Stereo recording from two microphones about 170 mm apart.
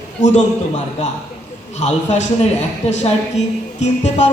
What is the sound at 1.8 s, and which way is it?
A man's voice, 45° left (ahead or behind).